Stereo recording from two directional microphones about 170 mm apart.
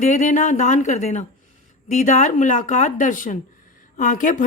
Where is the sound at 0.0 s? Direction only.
45° left (ahead or behind).